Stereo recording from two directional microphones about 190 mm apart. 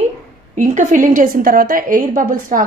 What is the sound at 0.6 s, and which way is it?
A woman's voice, 45° right (ahead or behind).